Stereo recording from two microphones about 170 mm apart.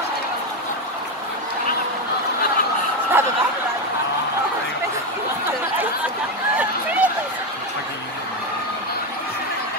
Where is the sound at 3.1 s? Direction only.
15° right (ahead or behind).